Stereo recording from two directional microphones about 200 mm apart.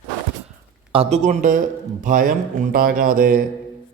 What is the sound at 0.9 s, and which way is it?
A man's voice, 35° right (ahead or behind).